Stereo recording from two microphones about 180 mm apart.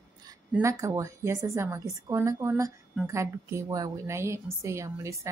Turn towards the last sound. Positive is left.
turn(degrees=-15)  # may be behind; listen again after turning